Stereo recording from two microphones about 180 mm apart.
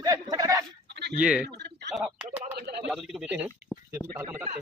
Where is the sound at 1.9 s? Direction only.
Centre (ahead or behind).